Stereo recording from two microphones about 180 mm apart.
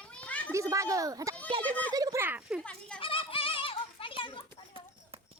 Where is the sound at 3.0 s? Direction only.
30° left (ahead or behind).